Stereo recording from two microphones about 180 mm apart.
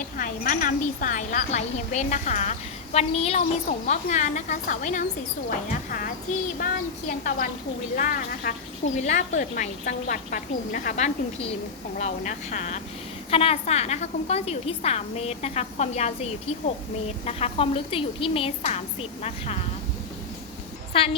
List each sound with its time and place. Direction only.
0.2 s speech: 50° left (ahead or behind)
7.1 s a woman's voice: 45° left (ahead or behind)
20.9 s a woman's voice: 30° left (ahead or behind)